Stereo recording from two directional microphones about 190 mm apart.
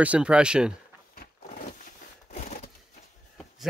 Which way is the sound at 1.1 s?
40° left (ahead or behind).